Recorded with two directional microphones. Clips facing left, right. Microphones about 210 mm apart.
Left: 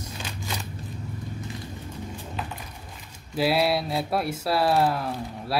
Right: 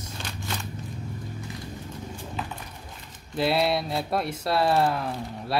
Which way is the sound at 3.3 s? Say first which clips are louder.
Left 1 dB; 5° left (ahead or behind).